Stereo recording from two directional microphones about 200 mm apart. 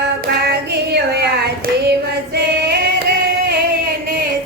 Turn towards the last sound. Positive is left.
turn(degrees=-55)  # may be behind; listen again after turning